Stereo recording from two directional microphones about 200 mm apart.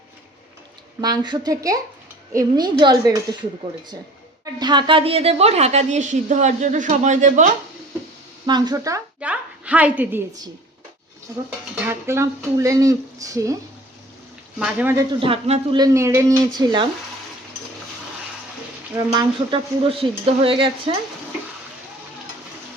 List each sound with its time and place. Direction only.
1.0 s a woman's voice: 20° right (ahead or behind)
4.6 s a woman's voice: 20° right (ahead or behind)
8.4 s a woman's voice: 20° right (ahead or behind)
9.2 s a woman's voice: 5° right (ahead or behind)
11.7 s speech: 10° right (ahead or behind)
14.6 s speech: 10° right (ahead or behind)
15.2 s a woman's voice: 30° right (ahead or behind)
15.8 s speech: 15° right (ahead or behind)
19.1 s a woman's voice: 25° right (ahead or behind)